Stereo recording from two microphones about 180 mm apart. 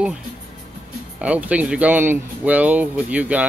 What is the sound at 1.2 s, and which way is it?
Speech, 5° right (ahead or behind).